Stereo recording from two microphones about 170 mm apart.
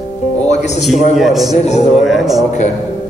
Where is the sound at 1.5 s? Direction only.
40° left (ahead or behind).